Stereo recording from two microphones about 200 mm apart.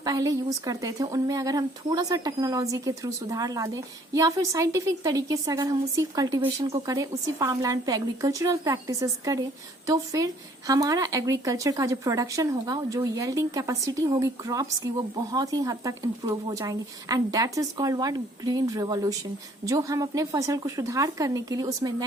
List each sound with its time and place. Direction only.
0.0 s a woman's voice: 20° right (ahead or behind)